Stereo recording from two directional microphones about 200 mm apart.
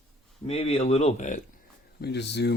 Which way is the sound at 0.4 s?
30° left (ahead or behind).